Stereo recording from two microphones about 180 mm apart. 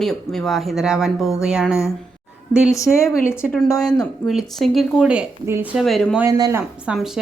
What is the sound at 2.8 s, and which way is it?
Speech, 15° left (ahead or behind).